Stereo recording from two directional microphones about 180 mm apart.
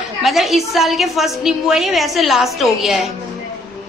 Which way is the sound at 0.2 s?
Centre (ahead or behind).